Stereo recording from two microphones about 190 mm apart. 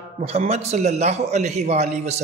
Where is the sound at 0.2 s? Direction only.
35° right (ahead or behind).